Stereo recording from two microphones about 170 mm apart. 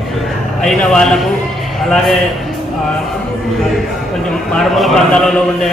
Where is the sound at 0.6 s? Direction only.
5° left (ahead or behind).